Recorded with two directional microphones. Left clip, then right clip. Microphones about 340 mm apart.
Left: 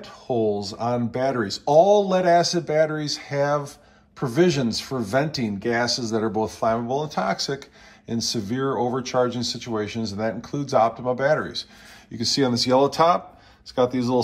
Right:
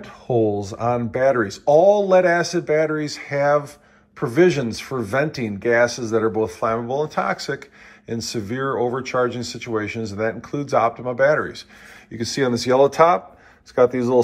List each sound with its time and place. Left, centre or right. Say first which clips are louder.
0.0 s speech: right 3 dB; centre
1.7 s speech: right 2 dB; left
2.0 s speech: right 3 dB; centre
4.8 s speech: right 2 dB; centre
5.1 s speech: right 1 dB; centre